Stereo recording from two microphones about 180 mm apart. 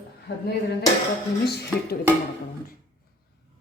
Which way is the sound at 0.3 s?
75° left (ahead or behind).